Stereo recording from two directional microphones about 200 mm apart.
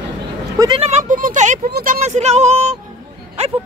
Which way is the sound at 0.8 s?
40° right (ahead or behind).